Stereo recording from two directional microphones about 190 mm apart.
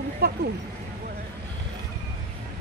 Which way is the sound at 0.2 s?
60° right (ahead or behind).